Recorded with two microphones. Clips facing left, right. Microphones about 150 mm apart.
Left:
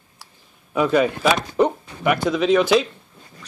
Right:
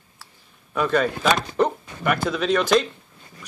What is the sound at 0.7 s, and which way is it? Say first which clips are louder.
Speech: left 3 dB; 10° left (ahead or behind).